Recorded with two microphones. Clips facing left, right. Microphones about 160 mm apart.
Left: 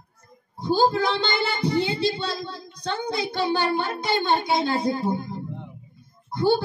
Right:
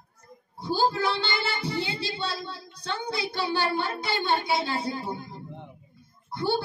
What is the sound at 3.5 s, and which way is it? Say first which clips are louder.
Child singing: left 2 dB; 20° left (ahead or behind).